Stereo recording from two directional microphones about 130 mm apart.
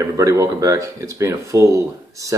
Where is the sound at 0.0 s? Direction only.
25° right (ahead or behind).